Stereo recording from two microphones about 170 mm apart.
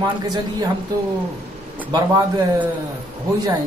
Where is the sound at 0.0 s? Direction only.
25° right (ahead or behind).